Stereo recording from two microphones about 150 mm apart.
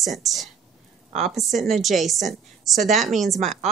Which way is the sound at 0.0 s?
Centre (ahead or behind).